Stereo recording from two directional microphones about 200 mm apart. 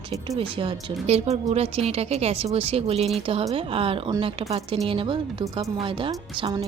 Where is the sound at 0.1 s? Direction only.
30° right (ahead or behind).